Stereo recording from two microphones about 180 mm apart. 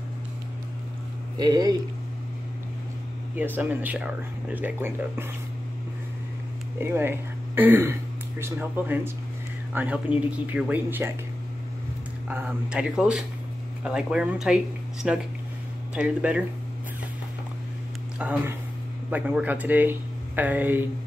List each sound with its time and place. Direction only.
1.4 s speech: 20° right (ahead or behind)
3.3 s speech: 10° right (ahead or behind)
6.8 s speech: 10° right (ahead or behind)
12.3 s speech: 10° right (ahead or behind)
18.2 s speech: 10° right (ahead or behind)